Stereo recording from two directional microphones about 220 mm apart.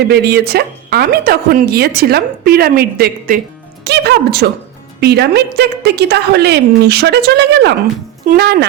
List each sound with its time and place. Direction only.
0.1 s a woman's voice: 45° right (ahead or behind)